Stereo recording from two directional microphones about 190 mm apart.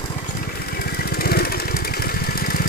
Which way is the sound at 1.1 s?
55° left (ahead or behind).